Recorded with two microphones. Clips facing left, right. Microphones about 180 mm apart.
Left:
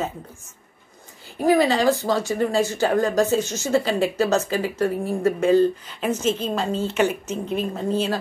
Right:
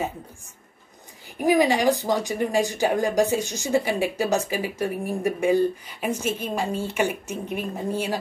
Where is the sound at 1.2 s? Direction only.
15° right (ahead or behind).